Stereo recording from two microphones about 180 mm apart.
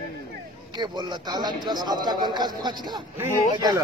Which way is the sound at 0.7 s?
25° right (ahead or behind).